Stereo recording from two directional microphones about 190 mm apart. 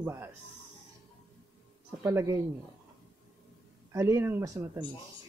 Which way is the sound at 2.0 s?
15° right (ahead or behind).